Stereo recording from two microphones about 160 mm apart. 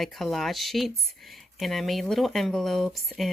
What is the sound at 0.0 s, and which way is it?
Speech, centre (ahead or behind).